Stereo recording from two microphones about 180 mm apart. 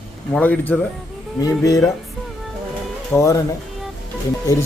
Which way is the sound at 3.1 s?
15° left (ahead or behind).